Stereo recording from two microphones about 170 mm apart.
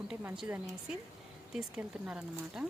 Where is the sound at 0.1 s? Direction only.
5° right (ahead or behind).